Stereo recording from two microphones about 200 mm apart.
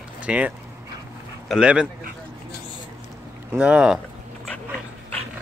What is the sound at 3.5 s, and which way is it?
Speech, 5° right (ahead or behind).